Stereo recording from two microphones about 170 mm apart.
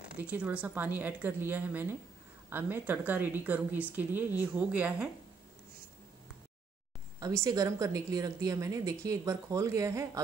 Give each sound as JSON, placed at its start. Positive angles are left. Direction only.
{"t": 0.1, "sound": "speech", "side_deg": -10}
{"t": 7.2, "sound": "a woman's voice", "side_deg": -20}